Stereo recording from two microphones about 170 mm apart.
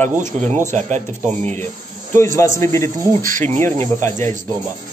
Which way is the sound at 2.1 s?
15° left (ahead or behind).